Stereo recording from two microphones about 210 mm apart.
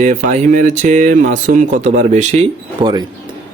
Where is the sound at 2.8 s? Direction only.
20° right (ahead or behind).